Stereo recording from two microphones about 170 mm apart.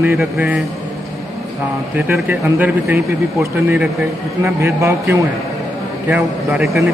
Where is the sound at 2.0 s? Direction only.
10° right (ahead or behind).